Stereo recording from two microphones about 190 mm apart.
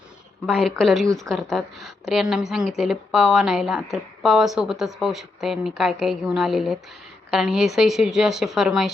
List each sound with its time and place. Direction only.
0.4 s speech: centre (ahead or behind)
1.0 s speech: 15° right (ahead or behind)
1.3 s speech: centre (ahead or behind)